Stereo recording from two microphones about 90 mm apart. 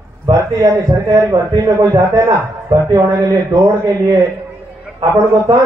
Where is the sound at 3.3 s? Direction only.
45° right (ahead or behind).